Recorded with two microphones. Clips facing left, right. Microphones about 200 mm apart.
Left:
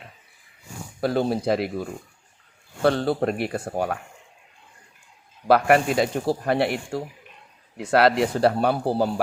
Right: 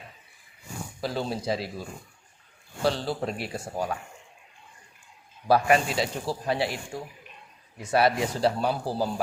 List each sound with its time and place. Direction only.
1.0 s speech: 55° left (ahead or behind)
5.5 s speech: 65° left (ahead or behind)
7.8 s speech: 75° left (ahead or behind); by 9.1 s 60° left (ahead or behind)